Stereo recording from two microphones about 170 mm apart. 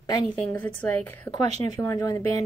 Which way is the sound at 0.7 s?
10° left (ahead or behind).